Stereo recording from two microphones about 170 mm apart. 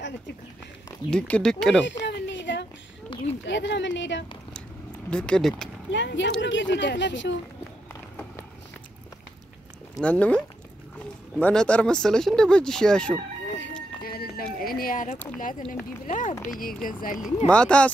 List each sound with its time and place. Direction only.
1.1 s speech: 5° left (ahead or behind)
1.9 s a sound: 90° left
5.1 s speech: 5° left (ahead or behind)
5.9 s speech: 90° left
9.9 s speech: 5° left (ahead or behind)
14.0 s music: 65° left (ahead or behind)
14.6 s a sound: 60° left (ahead or behind)
15.7 s speech: 50° left (ahead or behind)
17.5 s speech: 5° left (ahead or behind)